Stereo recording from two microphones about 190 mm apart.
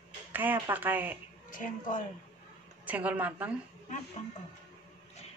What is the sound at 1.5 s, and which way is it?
Speech, 45° left (ahead or behind).